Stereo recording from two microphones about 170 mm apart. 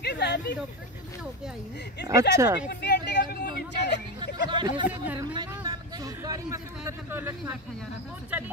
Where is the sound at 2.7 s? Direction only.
70° left (ahead or behind).